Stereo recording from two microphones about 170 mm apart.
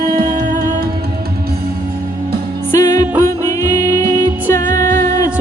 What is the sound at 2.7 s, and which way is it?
Music, 20° left (ahead or behind).